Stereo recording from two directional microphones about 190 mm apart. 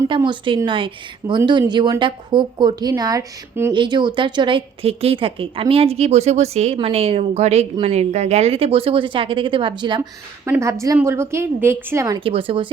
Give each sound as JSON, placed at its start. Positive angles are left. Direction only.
{"t": 0.3, "sound": "a woman's voice", "side_deg": -25}
{"t": 12.2, "sound": "a woman's voice", "side_deg": -30}